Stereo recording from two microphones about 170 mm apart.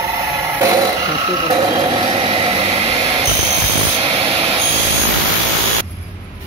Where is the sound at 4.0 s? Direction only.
30° right (ahead or behind).